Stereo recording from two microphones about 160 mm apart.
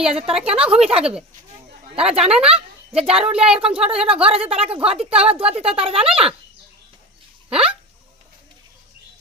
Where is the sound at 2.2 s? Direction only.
5° right (ahead or behind).